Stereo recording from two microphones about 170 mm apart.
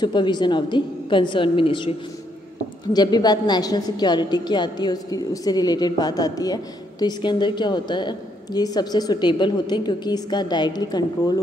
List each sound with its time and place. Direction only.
0.0 s a woman's voice: 25° left (ahead or behind)